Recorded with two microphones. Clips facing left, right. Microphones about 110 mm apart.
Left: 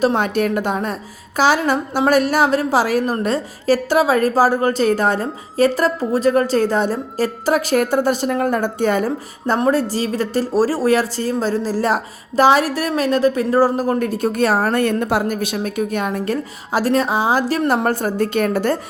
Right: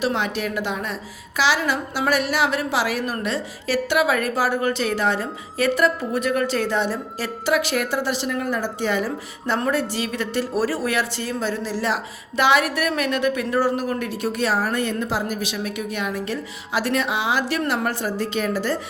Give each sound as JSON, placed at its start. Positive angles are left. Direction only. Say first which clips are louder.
{"t": 0.0, "sound": "a woman's voice", "louder": "left 7 dB", "side_deg": 45}
{"t": 9.6, "sound": "a woman's voice", "louder": "left 6 dB", "side_deg": 35}
{"t": 17.8, "sound": "a woman's voice", "louder": "left 6 dB", "side_deg": 50}